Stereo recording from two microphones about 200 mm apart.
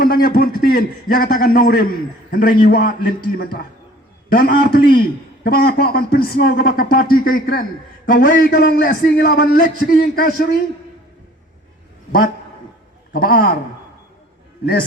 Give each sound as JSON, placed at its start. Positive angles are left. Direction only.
{"t": 0.1, "sound": "a man's voice", "side_deg": 45}
{"t": 13.1, "sound": "a man's voice", "side_deg": 45}